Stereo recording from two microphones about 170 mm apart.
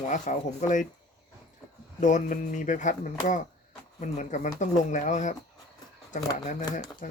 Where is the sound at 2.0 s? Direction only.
50° left (ahead or behind).